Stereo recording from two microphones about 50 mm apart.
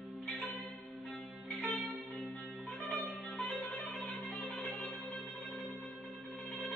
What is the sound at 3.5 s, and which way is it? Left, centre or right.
Music, left.